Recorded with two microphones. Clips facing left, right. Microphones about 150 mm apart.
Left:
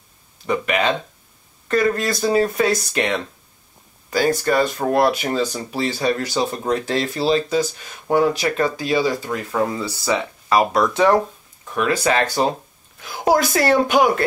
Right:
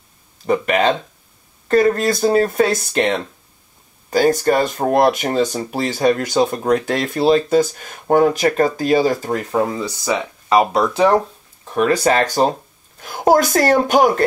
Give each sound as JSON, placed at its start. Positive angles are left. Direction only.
{"t": 0.5, "sound": "speech", "side_deg": -40}
{"t": 9.8, "sound": "speech", "side_deg": -15}